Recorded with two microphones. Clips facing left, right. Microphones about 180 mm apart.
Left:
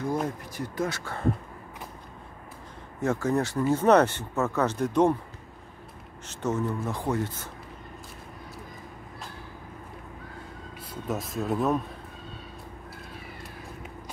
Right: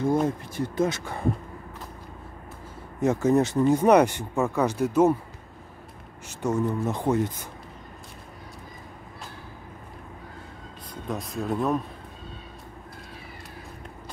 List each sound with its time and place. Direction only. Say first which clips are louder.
0.0 s speech: right 5 dB; 25° right (ahead or behind)
3.0 s speech: right 5 dB; 20° right (ahead or behind)
6.2 s speech: right 3 dB; 10° right (ahead or behind)
11.1 s speech: even; centre (ahead or behind)